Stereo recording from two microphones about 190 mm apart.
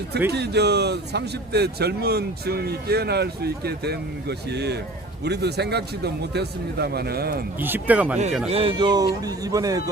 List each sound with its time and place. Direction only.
0.3 s speech: 60° right (ahead or behind)
7.6 s speech: 10° right (ahead or behind)
8.4 s a man's voice: 30° right (ahead or behind)